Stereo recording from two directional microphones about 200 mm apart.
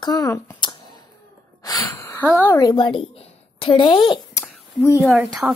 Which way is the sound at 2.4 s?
20° left (ahead or behind).